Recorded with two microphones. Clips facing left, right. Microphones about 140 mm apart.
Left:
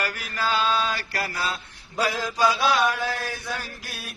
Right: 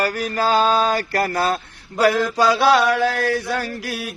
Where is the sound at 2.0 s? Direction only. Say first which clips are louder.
Right 7 dB; 65° right (ahead or behind).